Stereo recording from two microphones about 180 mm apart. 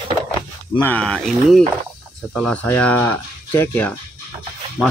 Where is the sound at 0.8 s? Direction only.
5° left (ahead or behind).